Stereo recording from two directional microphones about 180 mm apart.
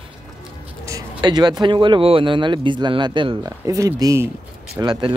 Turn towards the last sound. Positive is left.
turn(degrees=-25)  # may be behind; listen again after turning